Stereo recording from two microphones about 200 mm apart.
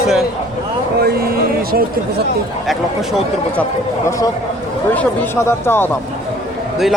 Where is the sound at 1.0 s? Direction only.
50° right (ahead or behind).